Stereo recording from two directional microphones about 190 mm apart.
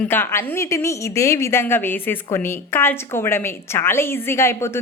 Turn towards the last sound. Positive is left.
turn(degrees=15)  # may be behind; listen again after turning